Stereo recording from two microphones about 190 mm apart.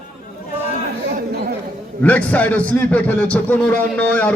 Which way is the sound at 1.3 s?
55° right (ahead or behind).